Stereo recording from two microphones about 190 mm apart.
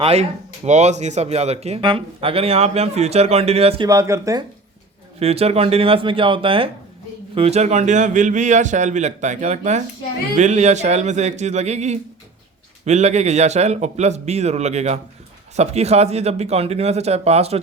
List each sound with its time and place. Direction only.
0.0 s speech: 35° right (ahead or behind)
3.8 s speech: 15° right (ahead or behind)
5.2 s speech: 35° right (ahead or behind)